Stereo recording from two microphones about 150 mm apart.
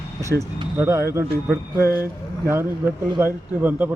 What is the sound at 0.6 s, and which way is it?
Speech, 20° right (ahead or behind).